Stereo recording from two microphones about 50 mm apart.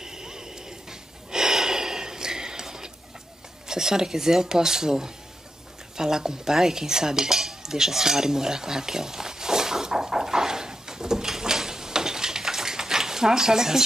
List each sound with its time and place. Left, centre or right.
0.0 s snort: centre
3.6 s speech: centre
5.9 s cutlery: centre